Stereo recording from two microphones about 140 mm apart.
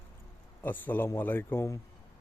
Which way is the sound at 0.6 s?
15° left (ahead or behind).